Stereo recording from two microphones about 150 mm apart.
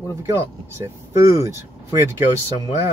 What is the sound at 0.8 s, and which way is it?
Speech, 20° right (ahead or behind).